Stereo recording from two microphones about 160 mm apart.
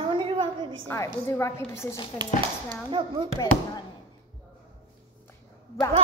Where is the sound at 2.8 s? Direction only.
30° right (ahead or behind).